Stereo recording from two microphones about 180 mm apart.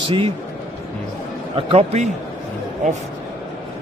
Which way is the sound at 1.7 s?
35° right (ahead or behind).